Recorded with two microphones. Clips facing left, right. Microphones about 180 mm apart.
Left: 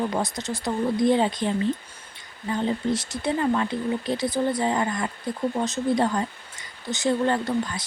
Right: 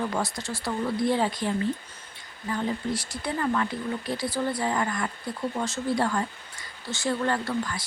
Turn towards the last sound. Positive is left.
turn(degrees=20)  # may be behind; listen again after turning